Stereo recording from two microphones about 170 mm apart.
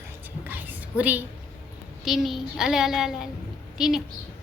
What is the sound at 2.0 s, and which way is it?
A woman's voice, centre (ahead or behind).